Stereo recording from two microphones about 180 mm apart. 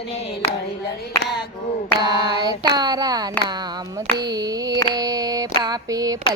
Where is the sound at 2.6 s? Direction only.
20° right (ahead or behind).